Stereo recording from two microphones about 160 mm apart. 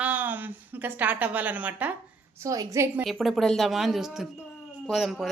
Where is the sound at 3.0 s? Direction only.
Centre (ahead or behind).